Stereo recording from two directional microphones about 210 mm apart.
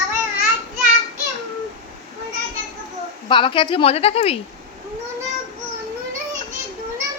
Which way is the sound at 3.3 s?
25° left (ahead or behind).